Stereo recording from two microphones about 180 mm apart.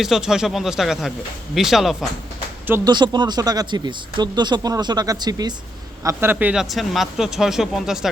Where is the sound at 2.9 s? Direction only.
25° right (ahead or behind).